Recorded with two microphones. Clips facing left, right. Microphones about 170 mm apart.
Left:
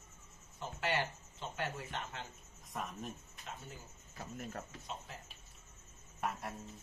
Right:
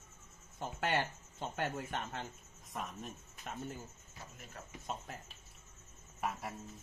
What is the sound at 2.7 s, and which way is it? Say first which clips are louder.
Speech: left 1 dB; centre (ahead or behind).